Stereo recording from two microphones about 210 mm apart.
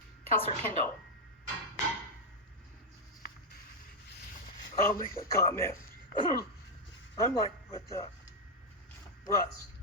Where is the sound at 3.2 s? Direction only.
45° left (ahead or behind).